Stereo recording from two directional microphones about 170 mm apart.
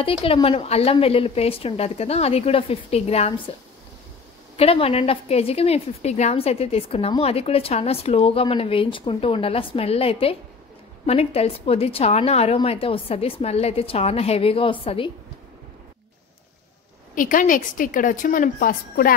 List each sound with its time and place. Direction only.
0.0 s a woman's voice: 35° left (ahead or behind)
4.6 s a woman's voice: 35° left (ahead or behind)
17.1 s a woman's voice: 50° left (ahead or behind)